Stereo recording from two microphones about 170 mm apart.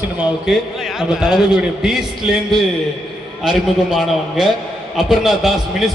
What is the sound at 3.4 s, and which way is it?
A man's voice, 5° right (ahead or behind).